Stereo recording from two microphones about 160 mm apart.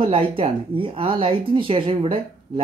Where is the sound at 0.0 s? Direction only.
35° right (ahead or behind).